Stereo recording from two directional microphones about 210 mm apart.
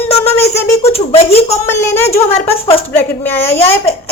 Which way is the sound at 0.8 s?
30° left (ahead or behind).